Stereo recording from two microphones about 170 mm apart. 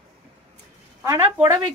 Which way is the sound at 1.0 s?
15° right (ahead or behind).